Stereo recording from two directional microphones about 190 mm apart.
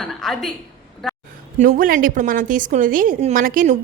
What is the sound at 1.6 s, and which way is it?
A woman's voice, 45° right (ahead or behind).